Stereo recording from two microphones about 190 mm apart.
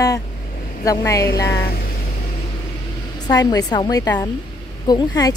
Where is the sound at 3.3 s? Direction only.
20° left (ahead or behind).